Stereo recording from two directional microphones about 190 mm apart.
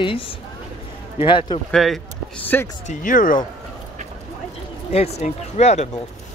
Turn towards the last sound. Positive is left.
turn(degrees=35)  # may be behind; listen again after turning